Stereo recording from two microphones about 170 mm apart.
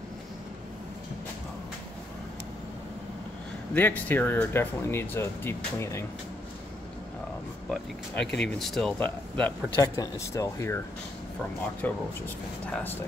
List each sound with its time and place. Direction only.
3.7 s speech: 10° left (ahead or behind)
7.7 s speech: 5° left (ahead or behind)
9.8 s speech: 20° left (ahead or behind)
11.8 s speech: 10° left (ahead or behind)